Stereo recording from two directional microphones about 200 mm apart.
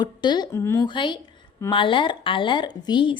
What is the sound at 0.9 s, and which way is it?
Speech, 25° left (ahead or behind).